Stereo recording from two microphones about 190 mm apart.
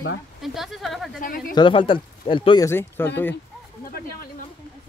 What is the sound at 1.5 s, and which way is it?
Speech, 25° left (ahead or behind).